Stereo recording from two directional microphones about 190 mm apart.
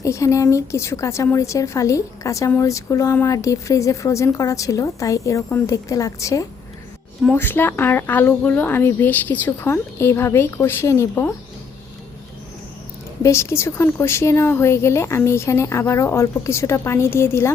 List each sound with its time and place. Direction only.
0.0 s a woman's voice: 15° left (ahead or behind)
13.2 s a woman's voice: 15° left (ahead or behind)